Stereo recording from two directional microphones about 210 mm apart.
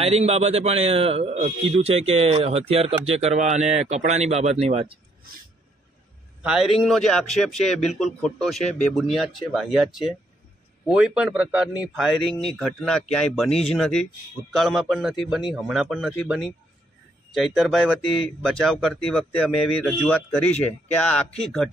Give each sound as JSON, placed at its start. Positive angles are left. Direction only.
{"t": 0.0, "sound": "a man's voice", "side_deg": -30}
{"t": 6.8, "sound": "speech", "side_deg": 0}